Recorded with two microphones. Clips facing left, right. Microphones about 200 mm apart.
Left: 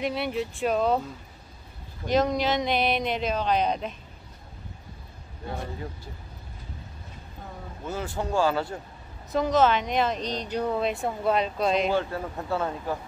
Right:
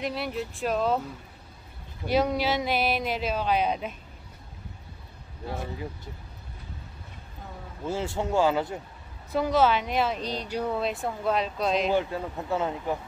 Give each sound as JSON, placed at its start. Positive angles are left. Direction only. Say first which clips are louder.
{"t": 0.0, "sound": "speech", "louder": "left 3 dB", "side_deg": 0}
{"t": 2.0, "sound": "speech", "louder": "left 1 dB", "side_deg": -10}
{"t": 5.5, "sound": "speech", "louder": "even", "side_deg": -5}
{"t": 7.8, "sound": "speech", "louder": "right 2 dB", "side_deg": -25}
{"t": 9.3, "sound": "speech", "louder": "left 1 dB", "side_deg": -10}
{"t": 11.9, "sound": "speech", "louder": "right 1 dB", "side_deg": -15}